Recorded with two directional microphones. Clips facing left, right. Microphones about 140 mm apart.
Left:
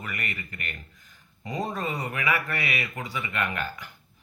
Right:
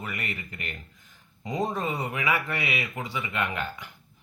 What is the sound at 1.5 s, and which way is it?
Speech, 20° right (ahead or behind).